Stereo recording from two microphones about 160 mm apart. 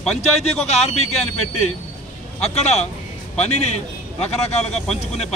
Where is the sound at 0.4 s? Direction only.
45° left (ahead or behind).